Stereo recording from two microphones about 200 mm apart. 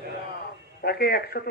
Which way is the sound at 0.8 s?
50° left (ahead or behind).